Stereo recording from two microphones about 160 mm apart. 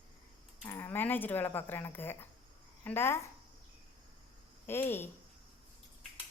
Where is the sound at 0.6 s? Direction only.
15° left (ahead or behind).